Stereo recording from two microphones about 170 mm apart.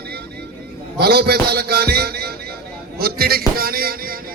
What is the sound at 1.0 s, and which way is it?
A man's voice, 70° right (ahead or behind).